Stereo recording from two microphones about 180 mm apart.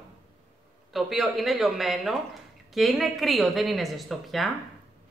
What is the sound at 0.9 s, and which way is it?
A woman's voice, centre (ahead or behind).